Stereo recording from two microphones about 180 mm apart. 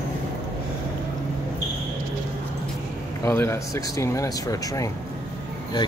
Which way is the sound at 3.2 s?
15° left (ahead or behind).